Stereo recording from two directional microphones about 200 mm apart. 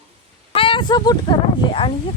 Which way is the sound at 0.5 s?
25° left (ahead or behind).